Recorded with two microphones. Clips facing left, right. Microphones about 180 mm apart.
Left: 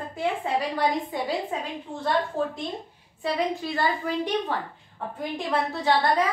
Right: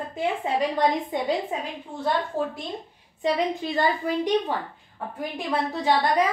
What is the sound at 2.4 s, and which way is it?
A woman's voice, 10° right (ahead or behind).